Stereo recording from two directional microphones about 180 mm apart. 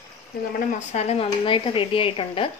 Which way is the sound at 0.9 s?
35° left (ahead or behind).